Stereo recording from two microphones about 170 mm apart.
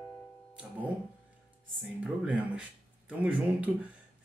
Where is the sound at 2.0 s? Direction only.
10° right (ahead or behind).